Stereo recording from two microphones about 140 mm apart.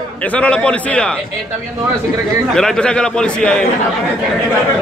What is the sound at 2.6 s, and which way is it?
A man's voice, 5° left (ahead or behind).